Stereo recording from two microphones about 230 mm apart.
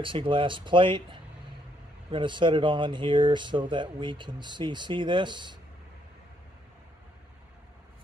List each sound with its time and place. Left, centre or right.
0.0 s speech: right